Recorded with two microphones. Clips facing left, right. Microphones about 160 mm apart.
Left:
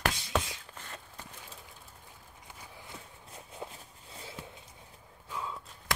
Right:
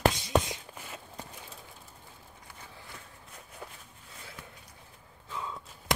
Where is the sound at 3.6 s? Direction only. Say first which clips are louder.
Left 3 dB; 20° left (ahead or behind).